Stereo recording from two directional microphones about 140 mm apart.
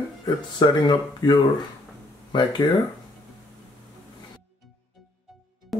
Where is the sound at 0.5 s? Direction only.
30° left (ahead or behind).